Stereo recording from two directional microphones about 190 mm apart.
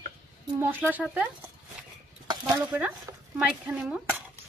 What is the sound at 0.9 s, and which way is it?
Speech, 10° right (ahead or behind).